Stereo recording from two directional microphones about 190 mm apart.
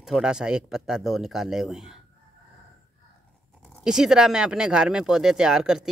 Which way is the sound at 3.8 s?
5° right (ahead or behind).